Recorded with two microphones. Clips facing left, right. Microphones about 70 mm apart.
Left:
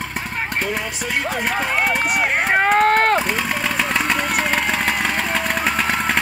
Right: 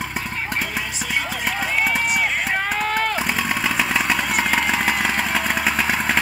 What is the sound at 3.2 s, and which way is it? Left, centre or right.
Vehicle, centre.